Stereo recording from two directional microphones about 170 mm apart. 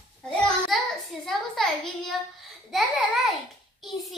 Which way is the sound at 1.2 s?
Centre (ahead or behind).